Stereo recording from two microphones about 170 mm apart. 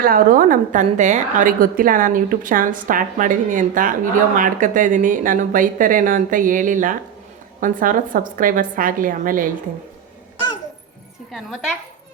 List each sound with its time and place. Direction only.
0.0 s a woman's voice: 55° right (ahead or behind)
11.3 s a woman's voice: 5° right (ahead or behind)